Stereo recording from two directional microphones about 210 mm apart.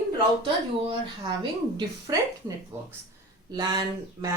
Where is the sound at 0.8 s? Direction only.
20° right (ahead or behind).